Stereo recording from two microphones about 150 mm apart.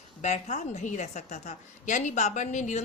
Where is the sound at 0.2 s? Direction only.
50° left (ahead or behind).